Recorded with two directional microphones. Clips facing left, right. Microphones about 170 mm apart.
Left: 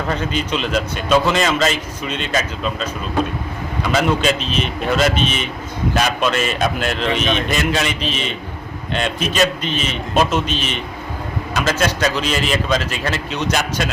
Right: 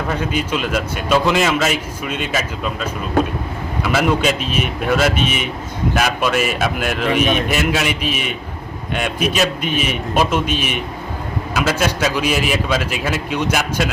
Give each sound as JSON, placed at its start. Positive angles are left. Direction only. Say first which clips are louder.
{"t": 0.1, "sound": "a man's voice", "louder": "right 1 dB", "side_deg": -10}